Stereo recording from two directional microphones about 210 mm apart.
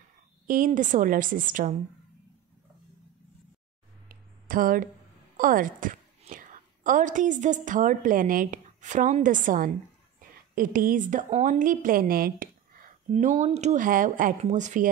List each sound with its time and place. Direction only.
0.5 s speech: 40° right (ahead or behind)
4.1 s a sound: 40° right (ahead or behind)
5.4 s a woman's voice: 40° right (ahead or behind)